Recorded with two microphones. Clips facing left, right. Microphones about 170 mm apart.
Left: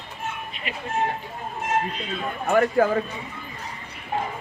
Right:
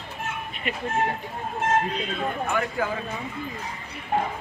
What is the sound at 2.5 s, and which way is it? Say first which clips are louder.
Speech: left 12 dB; 45° left (ahead or behind).